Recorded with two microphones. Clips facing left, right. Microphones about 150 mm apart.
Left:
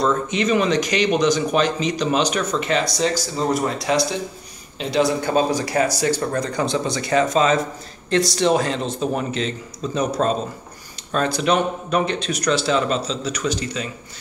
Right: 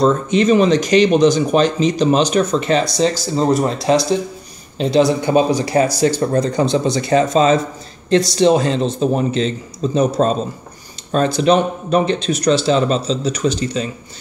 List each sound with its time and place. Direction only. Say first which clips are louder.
0.0 s speech: right 6 dB; 30° right (ahead or behind)
4.8 s speech: right 8 dB; 35° right (ahead or behind)
5.2 s speech: right 5 dB; 20° right (ahead or behind)